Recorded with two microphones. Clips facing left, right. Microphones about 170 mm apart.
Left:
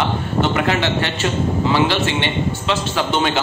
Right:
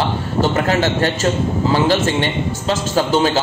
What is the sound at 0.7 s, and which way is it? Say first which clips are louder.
A man's voice: right 3 dB; 40° right (ahead or behind).